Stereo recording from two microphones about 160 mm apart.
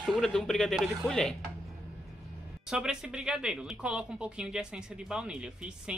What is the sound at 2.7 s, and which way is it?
Speech, 5° right (ahead or behind).